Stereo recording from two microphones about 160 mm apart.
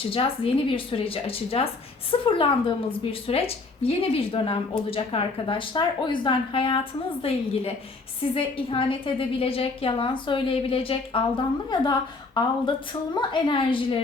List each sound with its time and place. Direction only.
0.0 s a woman's voice: 35° left (ahead or behind)